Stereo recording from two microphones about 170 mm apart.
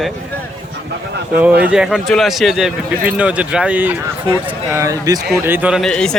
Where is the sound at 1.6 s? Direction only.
5° right (ahead or behind).